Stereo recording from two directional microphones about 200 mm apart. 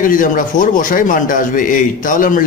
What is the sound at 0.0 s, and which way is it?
A man's voice, 40° left (ahead or behind).